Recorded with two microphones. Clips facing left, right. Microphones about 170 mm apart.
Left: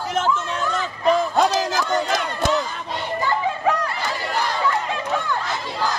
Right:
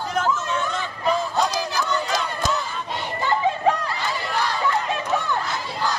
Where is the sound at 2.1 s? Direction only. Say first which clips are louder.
Left 3 dB; 60° left (ahead or behind).